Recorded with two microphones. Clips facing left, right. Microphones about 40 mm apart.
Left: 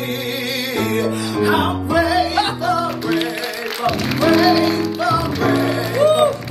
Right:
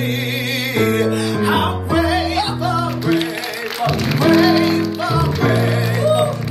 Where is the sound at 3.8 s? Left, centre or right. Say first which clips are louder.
Right 1 dB; centre.